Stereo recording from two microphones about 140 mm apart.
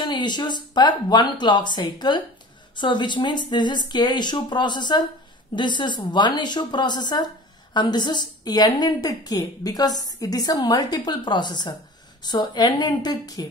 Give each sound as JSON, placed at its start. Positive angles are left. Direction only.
{"t": 0.0, "sound": "a woman's voice", "side_deg": 30}